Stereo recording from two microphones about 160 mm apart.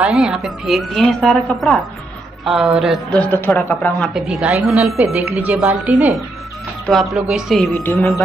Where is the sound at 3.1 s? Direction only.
10° left (ahead or behind).